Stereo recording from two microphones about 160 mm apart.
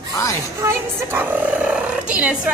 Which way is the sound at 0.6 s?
15° right (ahead or behind).